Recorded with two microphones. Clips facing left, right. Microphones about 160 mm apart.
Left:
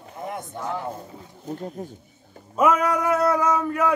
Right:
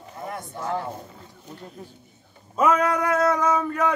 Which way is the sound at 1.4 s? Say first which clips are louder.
Left 9 dB; 45° left (ahead or behind).